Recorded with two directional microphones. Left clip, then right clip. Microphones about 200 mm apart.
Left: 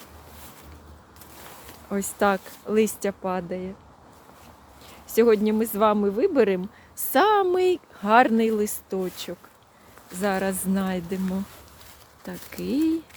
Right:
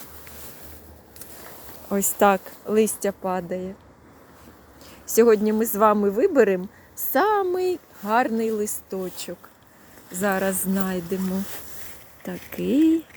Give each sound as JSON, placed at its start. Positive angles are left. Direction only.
{"t": 1.9, "sound": "speech", "side_deg": -5}
{"t": 4.9, "sound": "speech", "side_deg": 0}
{"t": 7.0, "sound": "speech", "side_deg": 15}
{"t": 10.2, "sound": "speech", "side_deg": 0}
{"t": 12.2, "sound": "speech", "side_deg": -5}